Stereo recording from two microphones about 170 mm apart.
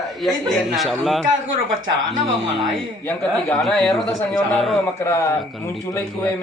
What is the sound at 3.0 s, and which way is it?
Speech, 15° left (ahead or behind).